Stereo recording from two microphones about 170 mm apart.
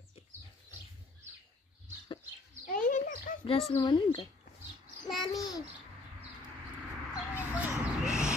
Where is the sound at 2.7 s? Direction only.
50° left (ahead or behind).